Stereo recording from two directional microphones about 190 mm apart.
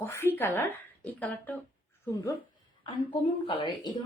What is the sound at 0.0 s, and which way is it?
Speech, 15° left (ahead or behind).